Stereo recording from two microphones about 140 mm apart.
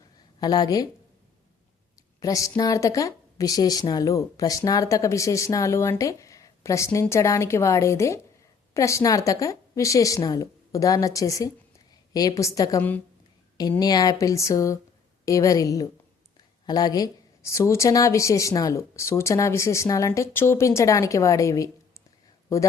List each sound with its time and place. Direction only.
0.3 s speech: 30° left (ahead or behind)
2.2 s speech: 25° left (ahead or behind)